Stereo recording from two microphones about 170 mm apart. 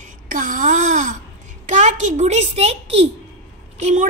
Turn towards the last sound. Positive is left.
turn(degrees=-45)  # may be behind; listen again after turning